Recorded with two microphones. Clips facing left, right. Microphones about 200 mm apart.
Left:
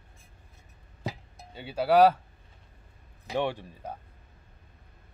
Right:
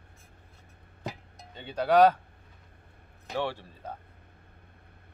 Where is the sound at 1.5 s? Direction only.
10° left (ahead or behind).